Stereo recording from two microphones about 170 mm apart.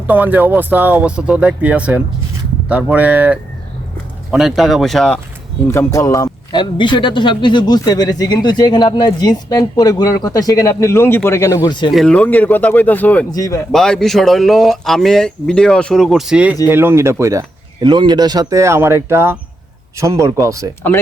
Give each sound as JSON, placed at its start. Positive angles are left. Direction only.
{"t": 0.1, "sound": "speech", "side_deg": -10}
{"t": 5.7, "sound": "speech", "side_deg": 20}
{"t": 11.9, "sound": "speech", "side_deg": 0}
{"t": 13.3, "sound": "speech", "side_deg": 20}
{"t": 13.7, "sound": "speech", "side_deg": 5}